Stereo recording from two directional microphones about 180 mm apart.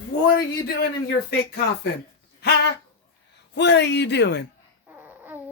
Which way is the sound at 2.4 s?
65° left (ahead or behind).